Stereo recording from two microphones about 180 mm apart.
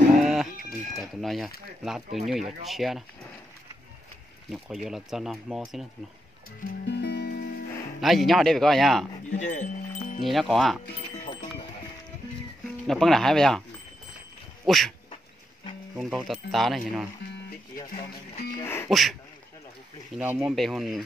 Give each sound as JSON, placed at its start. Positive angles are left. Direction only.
{"t": 0.2, "sound": "a sound", "side_deg": 0}
{"t": 1.8, "sound": "speech", "side_deg": 0}
{"t": 4.8, "sound": "speech", "side_deg": 0}
{"t": 6.9, "sound": "music", "side_deg": 65}
{"t": 8.0, "sound": "speech", "side_deg": 0}
{"t": 9.4, "sound": "wind chime", "side_deg": 40}
{"t": 10.2, "sound": "speech", "side_deg": 0}
{"t": 12.8, "sound": "speech", "side_deg": 0}
{"t": 14.7, "sound": "speech", "side_deg": 0}
{"t": 16.0, "sound": "speech", "side_deg": 0}
{"t": 18.6, "sound": "music", "side_deg": 15}
{"t": 18.9, "sound": "speech", "side_deg": 0}
{"t": 20.2, "sound": "speech", "side_deg": -5}